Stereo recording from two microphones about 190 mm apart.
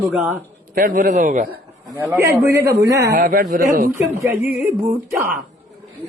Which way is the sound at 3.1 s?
45° right (ahead or behind).